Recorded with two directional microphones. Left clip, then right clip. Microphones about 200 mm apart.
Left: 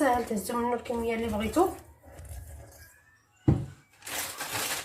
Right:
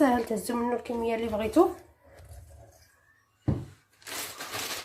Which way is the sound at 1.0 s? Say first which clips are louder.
Right 2 dB; 45° right (ahead or behind).